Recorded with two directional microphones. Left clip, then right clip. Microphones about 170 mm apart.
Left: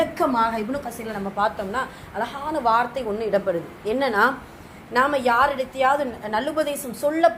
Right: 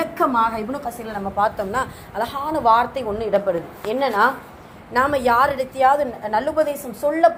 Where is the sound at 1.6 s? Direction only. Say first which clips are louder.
Right 3 dB; 35° right (ahead or behind).